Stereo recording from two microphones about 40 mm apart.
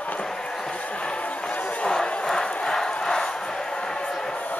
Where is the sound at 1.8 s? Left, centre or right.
Centre.